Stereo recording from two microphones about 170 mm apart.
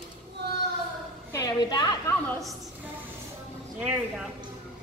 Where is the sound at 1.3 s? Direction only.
20° left (ahead or behind).